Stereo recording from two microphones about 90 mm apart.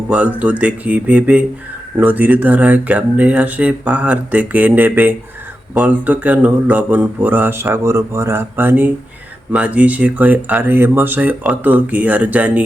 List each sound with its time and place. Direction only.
0.1 s speech: 15° right (ahead or behind)